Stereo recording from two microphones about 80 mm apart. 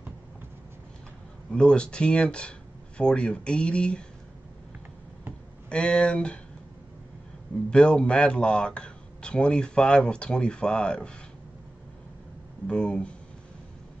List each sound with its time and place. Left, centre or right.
1.5 s speech: centre
5.7 s speech: centre
7.7 s speech: centre
12.6 s speech: centre